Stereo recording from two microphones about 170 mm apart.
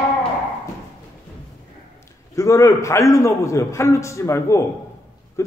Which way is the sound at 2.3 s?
20° left (ahead or behind).